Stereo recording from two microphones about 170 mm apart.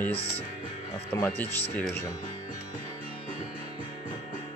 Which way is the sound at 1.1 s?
10° left (ahead or behind).